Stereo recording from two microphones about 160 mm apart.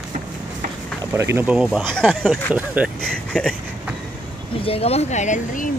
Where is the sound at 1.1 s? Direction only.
15° right (ahead or behind).